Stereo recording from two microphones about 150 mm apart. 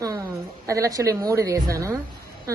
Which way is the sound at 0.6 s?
20° right (ahead or behind).